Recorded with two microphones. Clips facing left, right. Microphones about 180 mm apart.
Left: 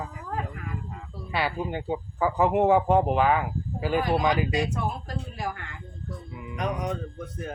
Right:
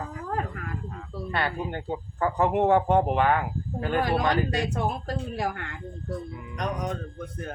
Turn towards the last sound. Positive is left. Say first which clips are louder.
# left 1 dB
turn(degrees=5)  # may be behind; listen again after turning